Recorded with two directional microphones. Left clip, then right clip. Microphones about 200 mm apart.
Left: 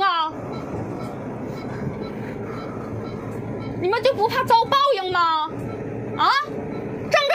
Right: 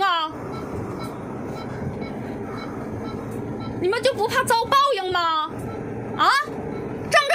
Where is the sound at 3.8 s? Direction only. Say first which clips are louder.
Left 2 dB; 25° right (ahead or behind).